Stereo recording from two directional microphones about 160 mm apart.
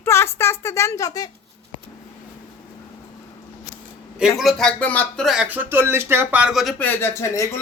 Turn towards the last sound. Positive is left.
turn(degrees=20)  # may be behind; listen again after turning